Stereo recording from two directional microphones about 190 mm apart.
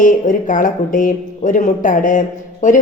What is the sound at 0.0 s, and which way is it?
Speech, 45° left (ahead or behind).